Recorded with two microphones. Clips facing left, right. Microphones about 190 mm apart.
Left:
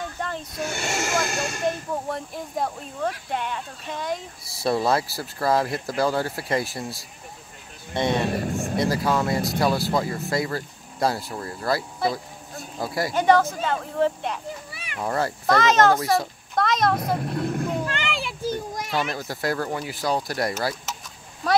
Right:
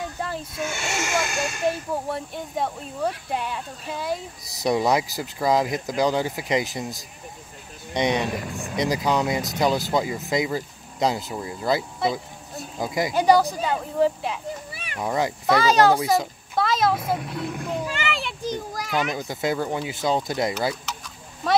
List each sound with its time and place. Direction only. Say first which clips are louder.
0.0 s a sound: right 1 dB; 5° right (ahead or behind)
0.8 s speech: left 1 dB; centre (ahead or behind)
4.5 s speech: right 1 dB; 15° right (ahead or behind)
8.3 s speech: left 4 dB; 40° left (ahead or behind)
8.7 s speech: right 1 dB; 15° right (ahead or behind)
12.0 s speech: right 1 dB; centre (ahead or behind)
12.8 s speech: right 1 dB; 15° right (ahead or behind)
16.1 s a child's voice: right 1 dB; centre (ahead or behind)
17.2 s speech: left 4 dB; 50° left (ahead or behind)
17.6 s children playing: even; centre (ahead or behind)
18.9 s a child's voice: right 2 dB; centre (ahead or behind)
19.1 s speech: right 1 dB; 20° right (ahead or behind)
21.4 s speech: even; centre (ahead or behind)